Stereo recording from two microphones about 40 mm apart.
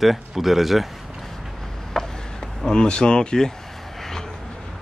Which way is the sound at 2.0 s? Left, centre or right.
Centre.